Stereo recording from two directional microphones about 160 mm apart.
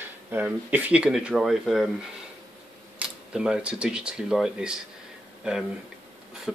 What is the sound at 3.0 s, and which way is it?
Speech, 5° right (ahead or behind).